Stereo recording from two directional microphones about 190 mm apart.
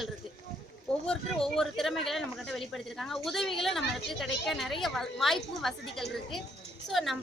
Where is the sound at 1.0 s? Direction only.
5° left (ahead or behind).